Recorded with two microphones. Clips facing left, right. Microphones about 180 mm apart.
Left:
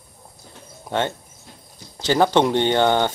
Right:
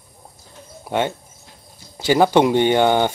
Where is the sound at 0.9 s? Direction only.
10° right (ahead or behind).